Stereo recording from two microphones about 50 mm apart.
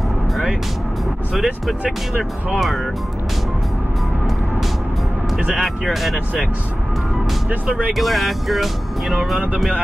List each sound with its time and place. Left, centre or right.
1.3 s speech: centre
5.6 s speech: centre
7.4 s speech: centre
7.9 s speech: centre